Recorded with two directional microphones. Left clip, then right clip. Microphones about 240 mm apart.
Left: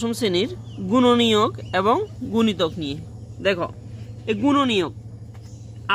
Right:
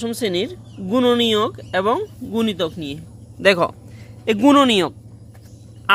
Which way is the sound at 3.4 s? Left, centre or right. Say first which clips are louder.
Right 7 dB; right.